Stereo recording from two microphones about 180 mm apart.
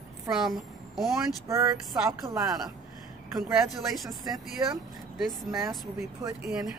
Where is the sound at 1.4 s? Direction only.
15° right (ahead or behind).